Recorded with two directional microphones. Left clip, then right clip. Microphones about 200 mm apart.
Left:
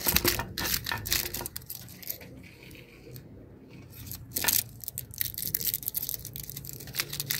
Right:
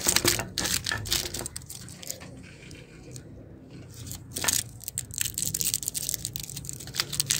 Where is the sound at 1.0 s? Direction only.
5° right (ahead or behind).